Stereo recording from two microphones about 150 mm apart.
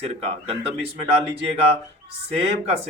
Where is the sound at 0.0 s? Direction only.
40° right (ahead or behind).